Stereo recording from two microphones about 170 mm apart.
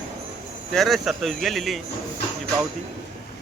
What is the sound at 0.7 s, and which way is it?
Speech, centre (ahead or behind).